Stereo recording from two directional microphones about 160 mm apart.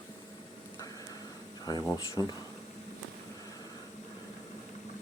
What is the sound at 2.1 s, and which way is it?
Speech, 25° left (ahead or behind).